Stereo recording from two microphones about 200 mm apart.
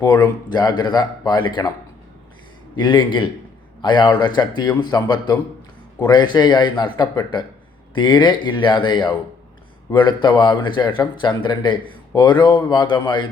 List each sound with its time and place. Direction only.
0.0 s speech: 20° left (ahead or behind)
2.7 s speech: 25° left (ahead or behind)